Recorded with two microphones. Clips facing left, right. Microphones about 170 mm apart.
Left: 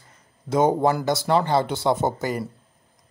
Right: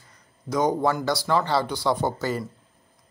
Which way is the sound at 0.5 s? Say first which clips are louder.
Left 3 dB; 25° left (ahead or behind).